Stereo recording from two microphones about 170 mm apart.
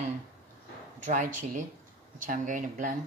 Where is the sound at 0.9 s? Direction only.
50° right (ahead or behind).